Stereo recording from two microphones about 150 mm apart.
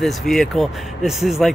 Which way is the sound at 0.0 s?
Centre (ahead or behind).